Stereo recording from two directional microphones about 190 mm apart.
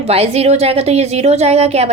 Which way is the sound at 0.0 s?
30° right (ahead or behind).